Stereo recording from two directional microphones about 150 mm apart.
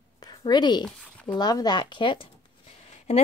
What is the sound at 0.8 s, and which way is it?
Speech, 10° left (ahead or behind).